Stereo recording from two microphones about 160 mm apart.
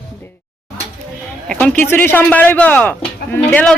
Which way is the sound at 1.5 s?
5° left (ahead or behind).